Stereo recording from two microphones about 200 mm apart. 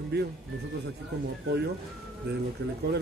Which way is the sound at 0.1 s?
55° right (ahead or behind).